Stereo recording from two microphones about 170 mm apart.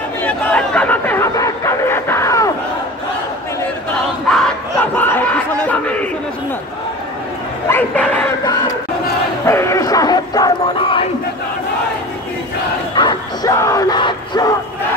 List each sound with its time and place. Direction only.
0.2 s chatter: 5° left (ahead or behind)
4.3 s crowd: 5° left (ahead or behind)
7.6 s dog: 10° left (ahead or behind)
9.5 s music: 15° left (ahead or behind)
12.9 s crowd: 25° left (ahead or behind)